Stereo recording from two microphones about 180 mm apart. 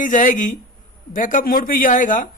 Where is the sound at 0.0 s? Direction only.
45° left (ahead or behind).